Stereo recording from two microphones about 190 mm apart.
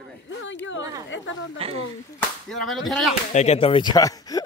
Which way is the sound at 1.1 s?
85° left.